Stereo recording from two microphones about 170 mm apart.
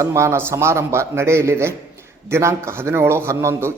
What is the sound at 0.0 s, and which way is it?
Speech, 15° right (ahead or behind).